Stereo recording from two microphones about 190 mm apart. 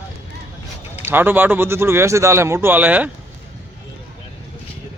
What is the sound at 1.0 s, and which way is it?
Speech, 10° right (ahead or behind).